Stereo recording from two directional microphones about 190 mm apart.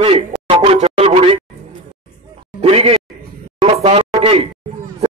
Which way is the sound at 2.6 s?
30° right (ahead or behind).